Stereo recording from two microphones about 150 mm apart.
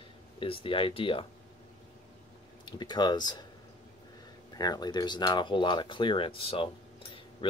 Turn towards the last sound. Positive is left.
turn(degrees=35)  # may be behind; listen again after turning